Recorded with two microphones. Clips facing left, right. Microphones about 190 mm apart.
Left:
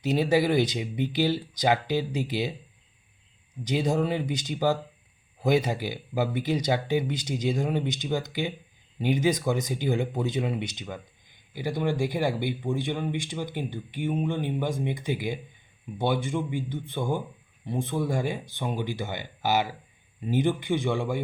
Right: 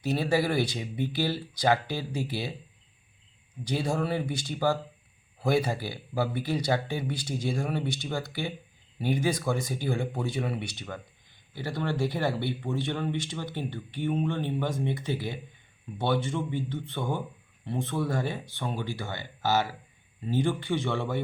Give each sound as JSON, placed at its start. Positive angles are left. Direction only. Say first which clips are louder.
{"t": 0.0, "sound": "speech", "louder": "left 3 dB", "side_deg": 15}
{"t": 3.6, "sound": "speech", "louder": "left 4 dB", "side_deg": 15}